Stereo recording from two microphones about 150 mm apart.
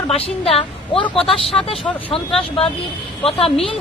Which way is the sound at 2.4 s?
40° left (ahead or behind).